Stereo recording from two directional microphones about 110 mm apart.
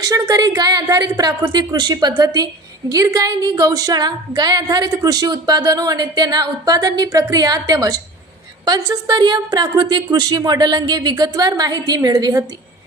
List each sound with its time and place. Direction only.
0.0 s a woman's voice: 35° right (ahead or behind)